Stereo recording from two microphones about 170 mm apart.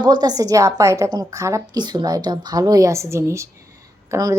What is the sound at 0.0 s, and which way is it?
A woman's voice, 25° right (ahead or behind).